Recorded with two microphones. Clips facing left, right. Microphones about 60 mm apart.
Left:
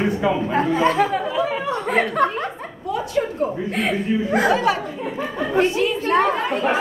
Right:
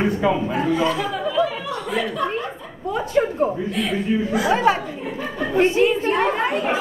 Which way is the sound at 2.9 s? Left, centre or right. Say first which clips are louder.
Right 2 dB; right.